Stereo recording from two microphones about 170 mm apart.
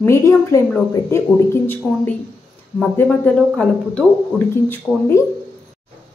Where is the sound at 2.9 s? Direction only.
10° left (ahead or behind).